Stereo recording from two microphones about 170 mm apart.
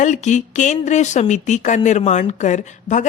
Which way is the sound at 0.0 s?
45° left (ahead or behind).